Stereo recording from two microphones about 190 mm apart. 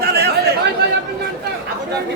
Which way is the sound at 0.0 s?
55° right (ahead or behind).